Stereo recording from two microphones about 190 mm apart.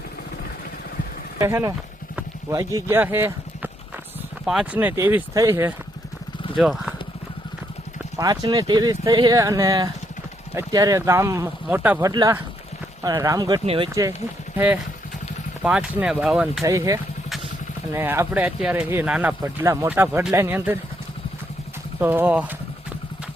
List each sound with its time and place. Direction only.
1.4 s speech: 15° right (ahead or behind)
6.6 s speech: centre (ahead or behind)
8.2 s speech: 20° right (ahead or behind)
13.7 s speech: 30° right (ahead or behind)
13.9 s speech: 15° right (ahead or behind)
15.6 s speech: 5° right (ahead or behind)
16.6 s speech: 15° right (ahead or behind)
22.0 s speech: 10° right (ahead or behind)